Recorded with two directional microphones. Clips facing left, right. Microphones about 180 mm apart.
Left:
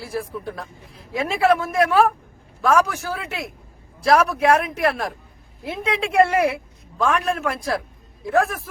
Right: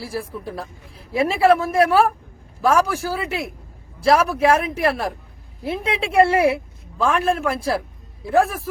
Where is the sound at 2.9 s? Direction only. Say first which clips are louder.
Right 4 dB; 30° right (ahead or behind).